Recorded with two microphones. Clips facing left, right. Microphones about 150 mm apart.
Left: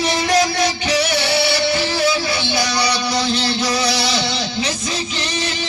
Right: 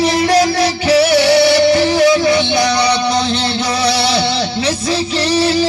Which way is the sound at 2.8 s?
25° right (ahead or behind).